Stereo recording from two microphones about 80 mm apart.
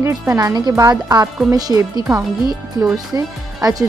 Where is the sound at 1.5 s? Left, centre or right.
Right.